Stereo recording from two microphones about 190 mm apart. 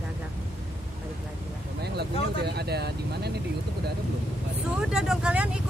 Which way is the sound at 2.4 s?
60° right (ahead or behind).